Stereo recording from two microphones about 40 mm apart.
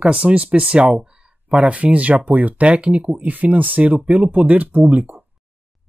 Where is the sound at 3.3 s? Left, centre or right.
Right.